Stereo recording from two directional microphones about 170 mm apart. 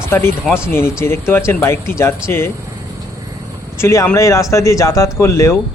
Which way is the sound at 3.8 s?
15° left (ahead or behind).